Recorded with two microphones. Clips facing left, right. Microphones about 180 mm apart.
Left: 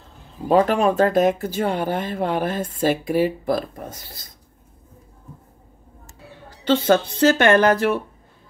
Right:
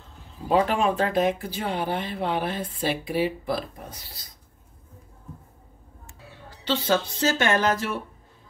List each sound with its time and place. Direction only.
0.5 s speech: 45° left (ahead or behind)
6.6 s speech: 55° left (ahead or behind)